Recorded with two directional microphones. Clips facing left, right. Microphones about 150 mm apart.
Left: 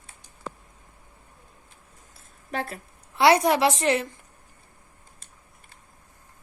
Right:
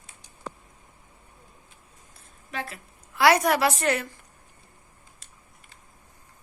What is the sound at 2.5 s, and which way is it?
Speech, 45° left (ahead or behind).